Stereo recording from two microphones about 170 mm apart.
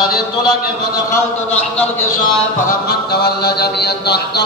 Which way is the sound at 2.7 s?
70° left (ahead or behind).